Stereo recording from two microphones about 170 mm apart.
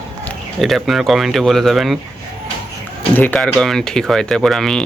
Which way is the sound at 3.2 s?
10° left (ahead or behind).